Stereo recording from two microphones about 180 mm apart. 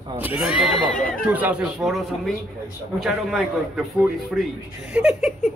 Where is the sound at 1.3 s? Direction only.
10° right (ahead or behind).